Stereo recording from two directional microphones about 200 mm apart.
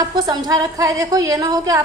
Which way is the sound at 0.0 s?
20° right (ahead or behind).